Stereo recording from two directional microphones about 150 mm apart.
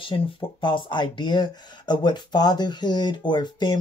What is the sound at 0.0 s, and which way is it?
Speech, 35° left (ahead or behind).